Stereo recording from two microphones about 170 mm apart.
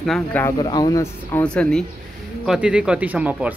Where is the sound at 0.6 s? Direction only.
25° left (ahead or behind); by 1.8 s 5° left (ahead or behind).